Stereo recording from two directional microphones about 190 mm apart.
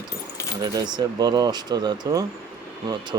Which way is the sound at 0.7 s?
20° right (ahead or behind).